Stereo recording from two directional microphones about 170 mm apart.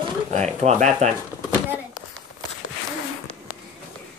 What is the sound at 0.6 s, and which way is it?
Speech, 45° right (ahead or behind).